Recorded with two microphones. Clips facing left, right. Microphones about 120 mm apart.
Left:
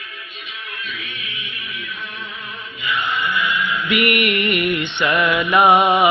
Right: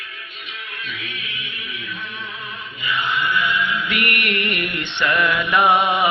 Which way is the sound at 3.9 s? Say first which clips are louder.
Left 5 dB; 10° left (ahead or behind).